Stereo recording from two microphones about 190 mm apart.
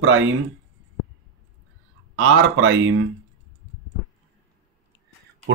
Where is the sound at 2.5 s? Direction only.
90° right.